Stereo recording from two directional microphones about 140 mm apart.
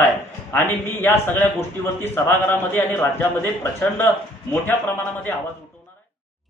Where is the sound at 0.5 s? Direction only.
15° left (ahead or behind).